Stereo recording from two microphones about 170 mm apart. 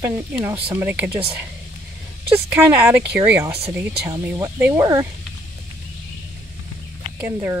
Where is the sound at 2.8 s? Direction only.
15° right (ahead or behind).